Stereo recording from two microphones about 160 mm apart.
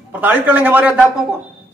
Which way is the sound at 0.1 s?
10° right (ahead or behind).